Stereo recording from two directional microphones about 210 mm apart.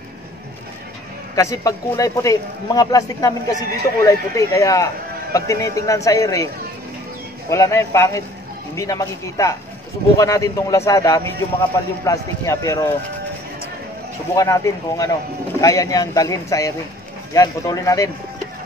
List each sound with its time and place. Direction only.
1.3 s a man's voice: 15° left (ahead or behind)
14.3 s a man's voice: 15° left (ahead or behind)